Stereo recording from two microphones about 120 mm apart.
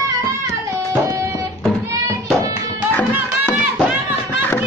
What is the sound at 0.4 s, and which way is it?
Music, 25° right (ahead or behind).